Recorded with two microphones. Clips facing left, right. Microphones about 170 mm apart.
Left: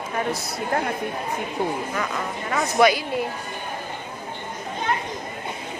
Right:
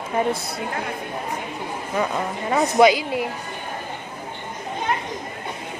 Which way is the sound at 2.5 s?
25° right (ahead or behind).